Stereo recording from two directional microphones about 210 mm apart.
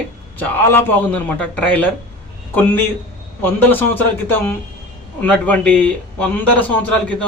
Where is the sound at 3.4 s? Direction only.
10° left (ahead or behind).